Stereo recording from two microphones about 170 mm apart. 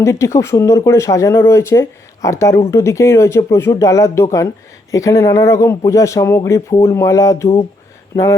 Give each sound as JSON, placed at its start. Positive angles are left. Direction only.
{"t": 0.0, "sound": "speech", "side_deg": 15}